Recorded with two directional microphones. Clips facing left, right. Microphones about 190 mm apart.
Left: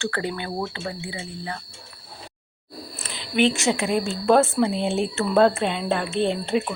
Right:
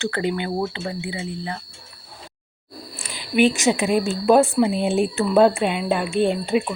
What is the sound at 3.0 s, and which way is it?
Speech, 15° right (ahead or behind).